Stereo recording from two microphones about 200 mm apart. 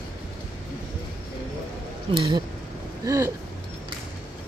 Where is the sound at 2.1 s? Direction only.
25° right (ahead or behind).